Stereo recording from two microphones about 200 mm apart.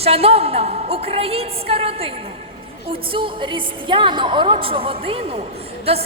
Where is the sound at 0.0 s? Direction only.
30° right (ahead or behind).